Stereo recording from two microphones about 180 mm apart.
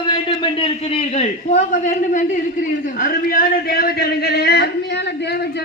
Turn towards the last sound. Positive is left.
turn(degrees=65)  # may be behind; listen again after turning